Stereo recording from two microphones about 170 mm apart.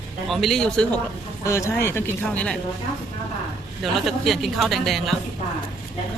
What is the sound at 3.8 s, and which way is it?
A woman's voice, centre (ahead or behind).